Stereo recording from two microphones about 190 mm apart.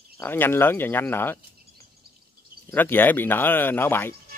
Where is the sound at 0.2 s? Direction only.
10° left (ahead or behind).